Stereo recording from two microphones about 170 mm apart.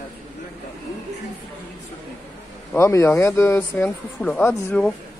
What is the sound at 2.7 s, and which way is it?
Speech, 15° left (ahead or behind).